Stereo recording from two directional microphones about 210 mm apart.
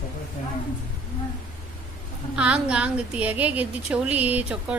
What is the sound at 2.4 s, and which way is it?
A woman's voice, 5° right (ahead or behind).